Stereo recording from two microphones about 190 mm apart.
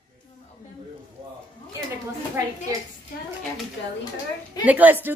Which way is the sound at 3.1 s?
50° left (ahead or behind).